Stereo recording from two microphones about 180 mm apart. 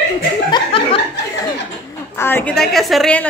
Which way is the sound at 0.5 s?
30° left (ahead or behind).